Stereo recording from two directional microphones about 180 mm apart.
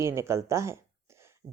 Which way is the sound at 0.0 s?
15° right (ahead or behind).